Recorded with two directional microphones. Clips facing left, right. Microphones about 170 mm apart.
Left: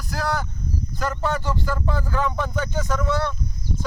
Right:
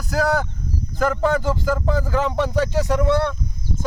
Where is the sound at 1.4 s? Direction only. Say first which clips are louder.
Right 5 dB; 90° right.